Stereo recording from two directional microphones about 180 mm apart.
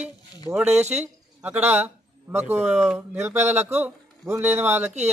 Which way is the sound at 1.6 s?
10° right (ahead or behind).